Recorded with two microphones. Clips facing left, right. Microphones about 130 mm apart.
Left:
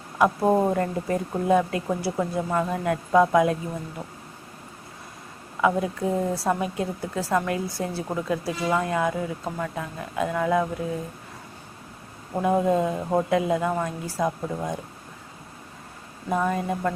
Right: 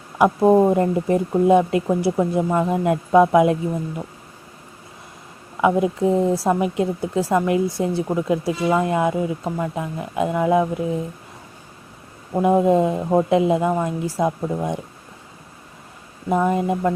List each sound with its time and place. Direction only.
0.2 s speech: 15° right (ahead or behind)
5.5 s speech: 20° right (ahead or behind)
12.4 s speech: 20° right (ahead or behind)
16.3 s speech: 20° right (ahead or behind)